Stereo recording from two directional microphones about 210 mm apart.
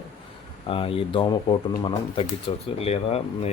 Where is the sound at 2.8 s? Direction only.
30° left (ahead or behind).